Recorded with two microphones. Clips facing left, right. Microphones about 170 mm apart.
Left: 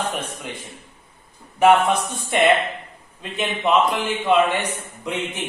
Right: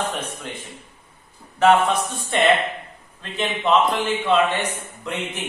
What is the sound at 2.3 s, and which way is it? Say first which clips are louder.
A man's voice: left 1 dB; 10° left (ahead or behind).